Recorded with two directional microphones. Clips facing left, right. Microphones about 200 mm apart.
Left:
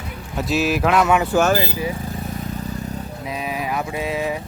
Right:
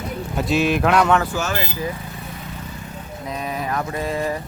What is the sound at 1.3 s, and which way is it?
Speech, 45° left (ahead or behind).